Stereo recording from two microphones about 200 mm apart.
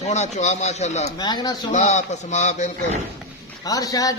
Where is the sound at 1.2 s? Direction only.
20° left (ahead or behind).